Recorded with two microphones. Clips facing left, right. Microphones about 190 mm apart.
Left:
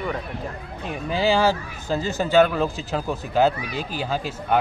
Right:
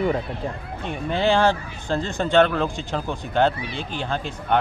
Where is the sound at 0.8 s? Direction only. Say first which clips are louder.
Even; 5° left (ahead or behind).